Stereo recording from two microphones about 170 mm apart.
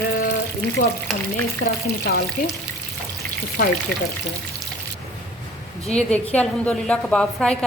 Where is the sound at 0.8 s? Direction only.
55° left (ahead or behind).